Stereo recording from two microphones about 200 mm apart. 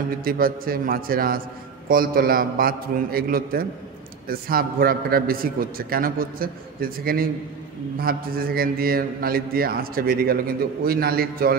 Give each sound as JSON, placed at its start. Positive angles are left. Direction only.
{"t": 0.2, "sound": "a man's voice", "side_deg": -45}